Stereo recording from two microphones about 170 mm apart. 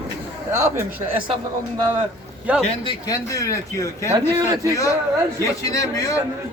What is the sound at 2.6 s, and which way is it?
A man's voice, 35° left (ahead or behind).